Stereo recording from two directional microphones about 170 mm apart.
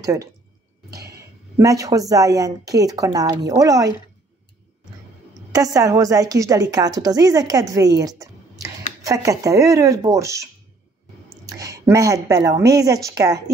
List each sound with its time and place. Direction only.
0.0 s speech: 20° right (ahead or behind)
0.8 s a sound: 70° right (ahead or behind)
1.6 s speech: 20° right (ahead or behind)
5.5 s speech: 20° right (ahead or behind)